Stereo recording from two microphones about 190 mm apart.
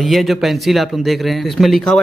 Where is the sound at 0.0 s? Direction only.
Centre (ahead or behind).